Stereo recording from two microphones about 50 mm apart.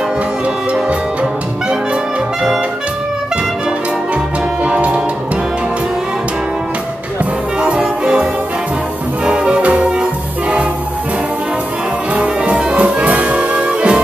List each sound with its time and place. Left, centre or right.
4.6 s music: right
7.6 s music: centre
12.1 s music: right